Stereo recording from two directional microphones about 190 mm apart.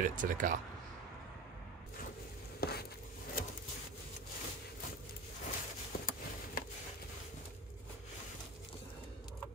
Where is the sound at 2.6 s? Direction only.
55° left (ahead or behind).